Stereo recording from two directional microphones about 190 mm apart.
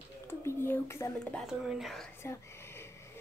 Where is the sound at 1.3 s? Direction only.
Centre (ahead or behind).